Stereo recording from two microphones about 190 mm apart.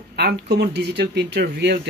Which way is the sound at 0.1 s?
60° right (ahead or behind).